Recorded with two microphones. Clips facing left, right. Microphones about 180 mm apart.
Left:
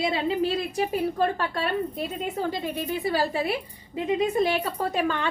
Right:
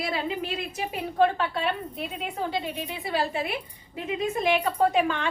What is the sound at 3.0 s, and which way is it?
Speech, 40° left (ahead or behind).